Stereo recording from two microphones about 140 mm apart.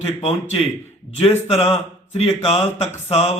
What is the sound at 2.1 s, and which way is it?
A man's voice, 50° left (ahead or behind).